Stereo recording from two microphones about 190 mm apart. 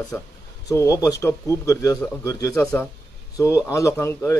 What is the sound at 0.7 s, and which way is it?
Speech, 15° left (ahead or behind).